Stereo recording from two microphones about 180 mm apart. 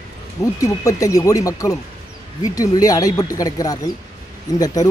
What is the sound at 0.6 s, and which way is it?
Speech, 20° left (ahead or behind).